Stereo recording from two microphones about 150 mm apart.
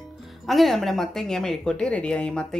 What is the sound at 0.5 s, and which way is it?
A woman's voice, centre (ahead or behind).